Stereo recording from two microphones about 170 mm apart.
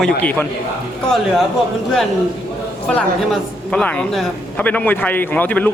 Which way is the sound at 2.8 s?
10° left (ahead or behind).